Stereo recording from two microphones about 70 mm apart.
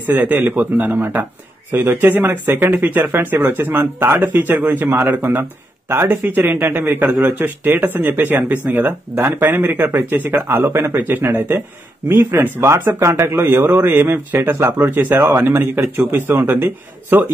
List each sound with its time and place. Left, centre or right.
0.0 s speech: right
10.7 s speech: right
11.0 s a man's voice: right
13.7 s a man's voice: right
15.2 s a man's voice: right